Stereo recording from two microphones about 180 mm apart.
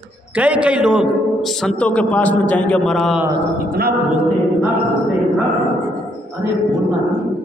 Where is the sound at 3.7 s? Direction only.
55° right (ahead or behind).